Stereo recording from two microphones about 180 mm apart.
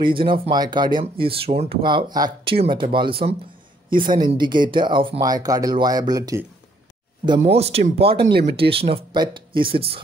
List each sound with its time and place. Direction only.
0.0 s speech: 30° right (ahead or behind)
7.2 s speech: 35° right (ahead or behind)
8.2 s speech: 65° right (ahead or behind)
8.5 s speech: 30° right (ahead or behind)